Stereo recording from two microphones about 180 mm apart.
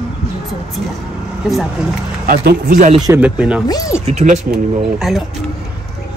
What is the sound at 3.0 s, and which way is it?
Speech, 10° right (ahead or behind).